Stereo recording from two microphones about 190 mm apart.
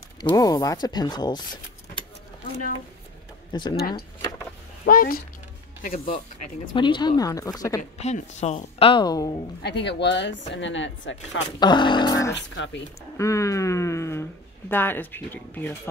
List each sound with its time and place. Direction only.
0.2 s speech: 20° left (ahead or behind)
3.5 s speech: 25° left (ahead or behind)
4.8 s speech: 50° left (ahead or behind)
6.7 s speech: 25° left (ahead or behind)
8.0 s speech: 35° left (ahead or behind); by 9.4 s 20° left (ahead or behind)
9.6 s speech: 65° left (ahead or behind)
11.6 s speech: 25° left (ahead or behind)
12.5 s speech: 75° left (ahead or behind)
13.2 s a sound: 15° left (ahead or behind)
14.7 s speech: 10° left (ahead or behind)